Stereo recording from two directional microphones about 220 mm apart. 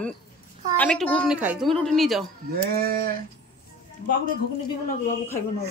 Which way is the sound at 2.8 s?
40° right (ahead or behind).